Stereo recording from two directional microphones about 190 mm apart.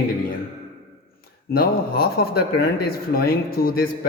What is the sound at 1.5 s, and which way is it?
Speech, 55° left (ahead or behind).